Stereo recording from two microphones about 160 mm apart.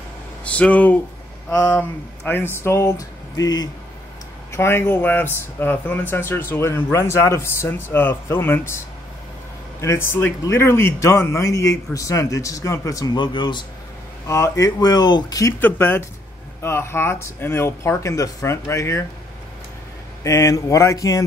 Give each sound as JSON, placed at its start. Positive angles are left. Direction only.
{"t": 0.5, "sound": "a man's voice", "side_deg": 10}
{"t": 14.2, "sound": "a man's voice", "side_deg": 20}
{"t": 20.2, "sound": "a man's voice", "side_deg": 20}